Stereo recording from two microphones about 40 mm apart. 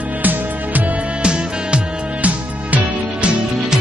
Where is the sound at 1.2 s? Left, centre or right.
Right.